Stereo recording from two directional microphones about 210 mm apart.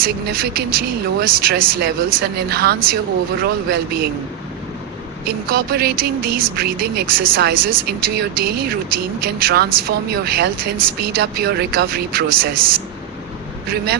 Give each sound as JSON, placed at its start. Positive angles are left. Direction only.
{"t": 0.0, "sound": "speech", "side_deg": -45}
{"t": 5.2, "sound": "speech", "side_deg": -45}
{"t": 13.7, "sound": "speech", "side_deg": -50}